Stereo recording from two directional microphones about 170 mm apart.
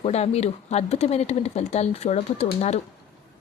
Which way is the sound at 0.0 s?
40° left (ahead or behind).